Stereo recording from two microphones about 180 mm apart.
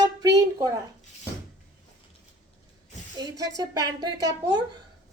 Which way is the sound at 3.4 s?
20° right (ahead or behind).